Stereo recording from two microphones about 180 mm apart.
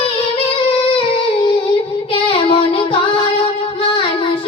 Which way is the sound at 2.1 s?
30° left (ahead or behind).